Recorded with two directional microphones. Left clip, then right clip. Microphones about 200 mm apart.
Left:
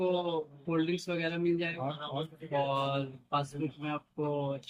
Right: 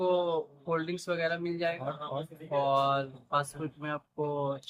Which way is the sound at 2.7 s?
20° right (ahead or behind).